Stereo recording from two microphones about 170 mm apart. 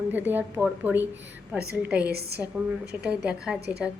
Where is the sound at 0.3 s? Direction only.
10° right (ahead or behind).